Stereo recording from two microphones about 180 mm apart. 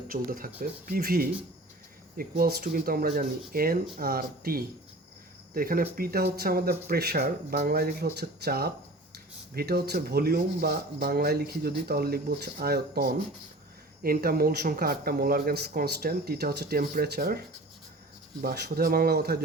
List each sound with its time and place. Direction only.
0.1 s speech: 50° right (ahead or behind)
18.4 s speech: 60° right (ahead or behind)